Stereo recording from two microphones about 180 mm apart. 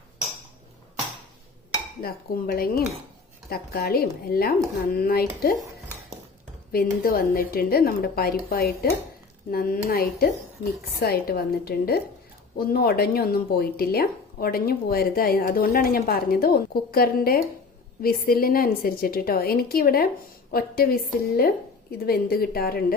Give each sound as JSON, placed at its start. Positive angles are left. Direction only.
{"t": 2.0, "sound": "speech", "side_deg": 55}
{"t": 6.7, "sound": "speech", "side_deg": 55}